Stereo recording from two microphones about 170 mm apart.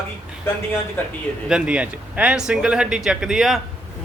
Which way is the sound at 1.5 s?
5° right (ahead or behind).